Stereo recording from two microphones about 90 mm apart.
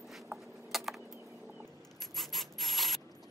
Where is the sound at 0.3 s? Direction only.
30° right (ahead or behind).